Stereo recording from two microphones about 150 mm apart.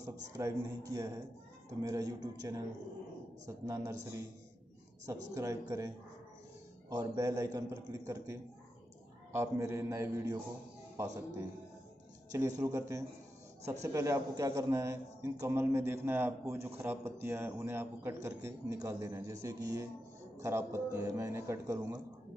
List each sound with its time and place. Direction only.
0.4 s a man's voice: 20° right (ahead or behind)
5.3 s a man's voice: 20° right (ahead or behind)
6.9 s a man's voice: 25° right (ahead or behind)